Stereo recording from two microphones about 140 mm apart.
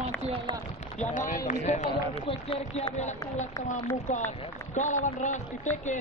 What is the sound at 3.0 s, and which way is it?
Speech, 55° left (ahead or behind).